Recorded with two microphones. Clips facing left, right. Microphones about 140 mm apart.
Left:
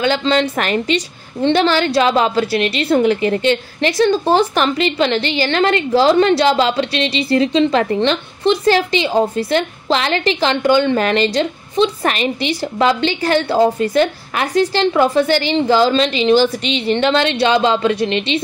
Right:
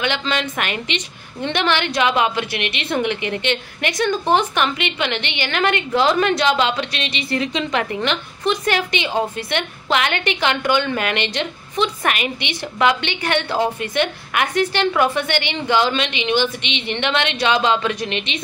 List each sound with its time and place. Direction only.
0.0 s a woman's voice: 35° left (ahead or behind)